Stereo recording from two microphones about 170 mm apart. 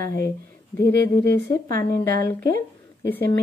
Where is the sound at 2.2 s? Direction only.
15° left (ahead or behind).